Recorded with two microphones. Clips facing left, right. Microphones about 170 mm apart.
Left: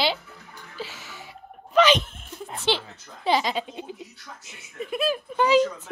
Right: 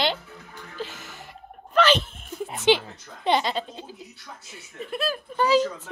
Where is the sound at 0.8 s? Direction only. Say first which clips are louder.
Right 3 dB; 50° right (ahead or behind).